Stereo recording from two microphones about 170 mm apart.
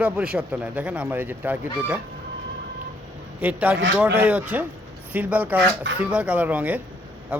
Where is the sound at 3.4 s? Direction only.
10° right (ahead or behind).